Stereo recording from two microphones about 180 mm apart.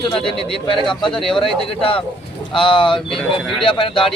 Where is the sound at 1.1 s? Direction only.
5° left (ahead or behind).